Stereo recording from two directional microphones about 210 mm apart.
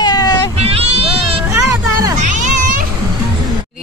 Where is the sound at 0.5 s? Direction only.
30° right (ahead or behind).